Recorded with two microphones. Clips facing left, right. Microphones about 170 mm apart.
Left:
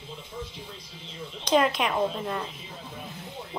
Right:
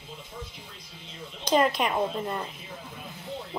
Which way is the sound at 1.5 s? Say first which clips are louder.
Even; 5° right (ahead or behind).